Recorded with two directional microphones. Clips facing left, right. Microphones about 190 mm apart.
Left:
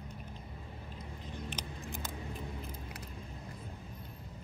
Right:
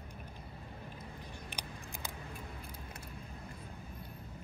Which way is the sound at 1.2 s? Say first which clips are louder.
Left 4 dB; 15° right (ahead or behind).